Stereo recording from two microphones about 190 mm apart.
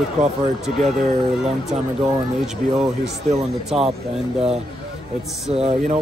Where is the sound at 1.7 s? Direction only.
Centre (ahead or behind).